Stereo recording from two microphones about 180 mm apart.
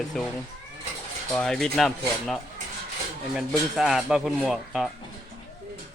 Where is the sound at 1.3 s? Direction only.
Centre (ahead or behind).